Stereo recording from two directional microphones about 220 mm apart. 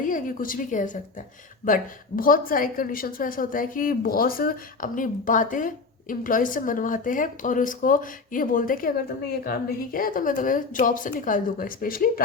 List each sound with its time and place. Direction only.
0.0 s a woman's voice: 40° left (ahead or behind)